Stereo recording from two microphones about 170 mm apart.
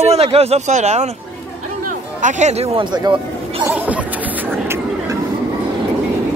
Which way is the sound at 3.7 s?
10° right (ahead or behind).